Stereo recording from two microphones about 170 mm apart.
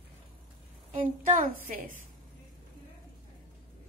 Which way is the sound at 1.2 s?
50° right (ahead or behind).